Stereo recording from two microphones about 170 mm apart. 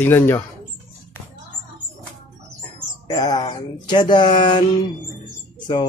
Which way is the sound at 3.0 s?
25° left (ahead or behind).